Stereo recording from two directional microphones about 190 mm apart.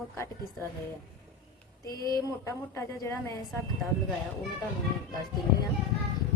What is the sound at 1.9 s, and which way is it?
Speech, 20° right (ahead or behind).